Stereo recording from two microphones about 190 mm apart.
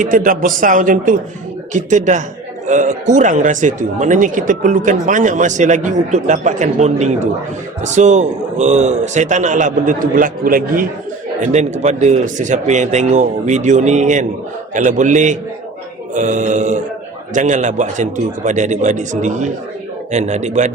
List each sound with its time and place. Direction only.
0.0 s a man's voice: 45° right (ahead or behind)